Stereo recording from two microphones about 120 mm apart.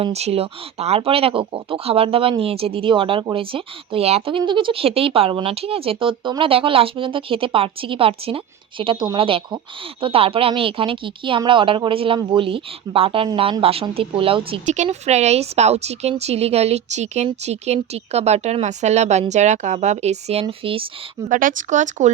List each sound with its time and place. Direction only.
0.0 s speech: 60° right (ahead or behind)
14.8 s a woman's voice: 65° right (ahead or behind); by 20.9 s 50° right (ahead or behind)
21.2 s speech: 90° right